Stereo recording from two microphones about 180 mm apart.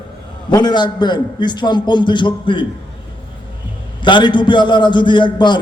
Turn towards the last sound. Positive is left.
turn(degrees=25)  # may be behind; listen again after turning